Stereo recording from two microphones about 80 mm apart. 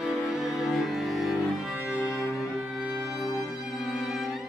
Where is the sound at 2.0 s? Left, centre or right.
Left.